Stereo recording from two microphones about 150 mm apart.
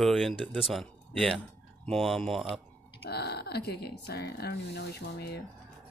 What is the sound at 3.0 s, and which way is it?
Speech, 90° left.